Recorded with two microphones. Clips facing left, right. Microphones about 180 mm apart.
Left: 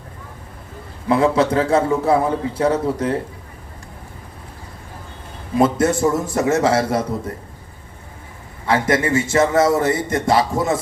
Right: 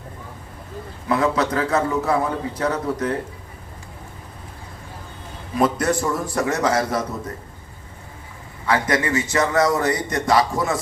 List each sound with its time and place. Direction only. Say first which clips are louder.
1.0 s a man's voice: left 4 dB; 30° left (ahead or behind)
5.5 s a man's voice: left 4 dB; 25° left (ahead or behind)
8.6 s a man's voice: left 3 dB; 25° left (ahead or behind)